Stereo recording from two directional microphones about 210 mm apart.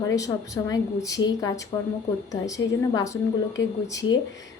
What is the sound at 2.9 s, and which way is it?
Speech, 15° left (ahead or behind).